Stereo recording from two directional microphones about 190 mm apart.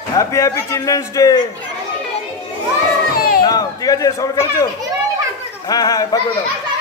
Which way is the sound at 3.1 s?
50° left (ahead or behind).